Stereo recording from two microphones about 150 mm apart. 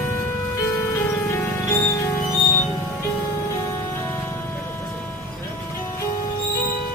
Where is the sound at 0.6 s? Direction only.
20° left (ahead or behind).